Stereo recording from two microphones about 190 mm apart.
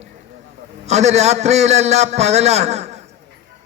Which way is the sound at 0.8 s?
35° right (ahead or behind).